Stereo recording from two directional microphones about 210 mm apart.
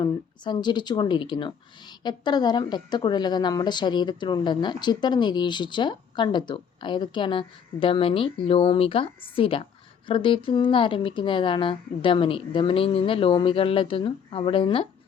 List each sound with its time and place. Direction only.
0.0 s speech: 20° left (ahead or behind)